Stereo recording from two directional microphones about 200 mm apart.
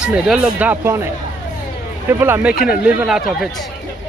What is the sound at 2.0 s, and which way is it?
Speech, 10° right (ahead or behind).